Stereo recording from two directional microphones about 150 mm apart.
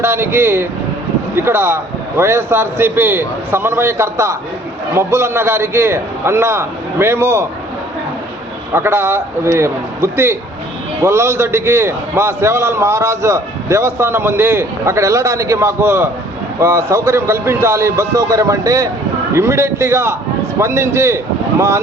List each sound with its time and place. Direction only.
0.0 s a man's voice: 15° right (ahead or behind)
8.7 s a man's voice: 15° right (ahead or behind)